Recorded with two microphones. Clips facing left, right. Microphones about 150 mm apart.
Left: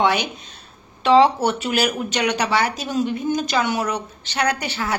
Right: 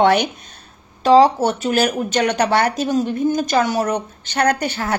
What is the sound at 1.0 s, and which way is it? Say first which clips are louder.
A woman's voice: right 3 dB; 40° right (ahead or behind).